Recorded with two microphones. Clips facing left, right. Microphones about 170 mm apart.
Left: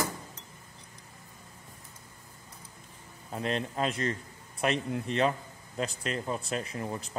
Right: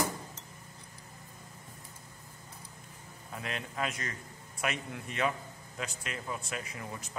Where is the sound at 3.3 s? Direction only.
30° left (ahead or behind).